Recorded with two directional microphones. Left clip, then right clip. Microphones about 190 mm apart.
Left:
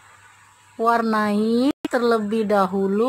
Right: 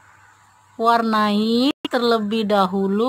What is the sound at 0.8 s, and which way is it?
Speech, 15° right (ahead or behind).